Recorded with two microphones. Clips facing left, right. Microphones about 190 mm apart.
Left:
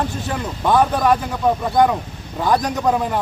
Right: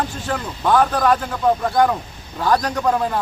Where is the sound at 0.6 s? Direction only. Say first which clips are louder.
Even; 15° left (ahead or behind).